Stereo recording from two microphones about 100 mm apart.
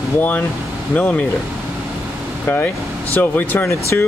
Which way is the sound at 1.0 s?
20° left (ahead or behind).